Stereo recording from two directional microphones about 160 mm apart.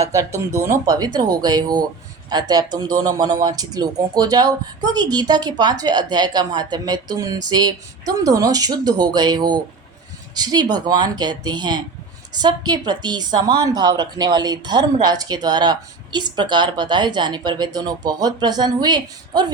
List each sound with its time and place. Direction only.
0.0 s a woman's voice: 20° right (ahead or behind)